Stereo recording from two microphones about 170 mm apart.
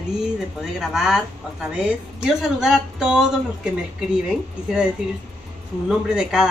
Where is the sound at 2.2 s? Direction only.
5° right (ahead or behind).